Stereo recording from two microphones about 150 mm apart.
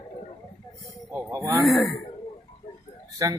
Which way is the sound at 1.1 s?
20° right (ahead or behind).